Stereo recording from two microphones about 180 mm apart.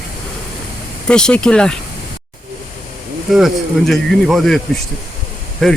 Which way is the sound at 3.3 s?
Centre (ahead or behind).